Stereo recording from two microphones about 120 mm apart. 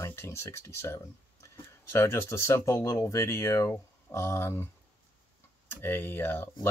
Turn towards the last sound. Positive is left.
turn(degrees=20)  # may be behind; listen again after turning